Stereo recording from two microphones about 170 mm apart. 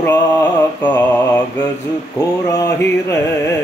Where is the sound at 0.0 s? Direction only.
10° left (ahead or behind).